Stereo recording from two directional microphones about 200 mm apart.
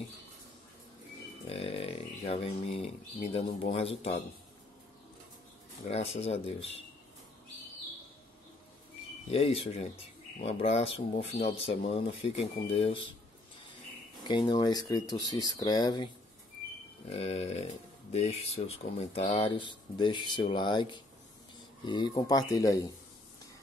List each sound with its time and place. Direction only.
1.5 s speech: 30° left (ahead or behind)
5.9 s speech: 30° left (ahead or behind)
9.3 s speech: 30° left (ahead or behind)
14.2 s speech: 20° left (ahead or behind)
17.1 s speech: 30° left (ahead or behind)